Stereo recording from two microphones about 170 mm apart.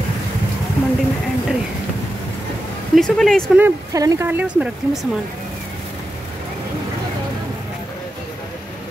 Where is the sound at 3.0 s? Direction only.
5° left (ahead or behind).